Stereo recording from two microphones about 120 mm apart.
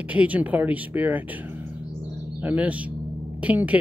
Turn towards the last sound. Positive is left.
turn(degrees=-10)  # may be behind; listen again after turning